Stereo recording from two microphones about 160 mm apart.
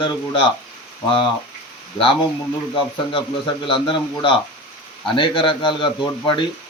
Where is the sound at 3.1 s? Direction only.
30° left (ahead or behind).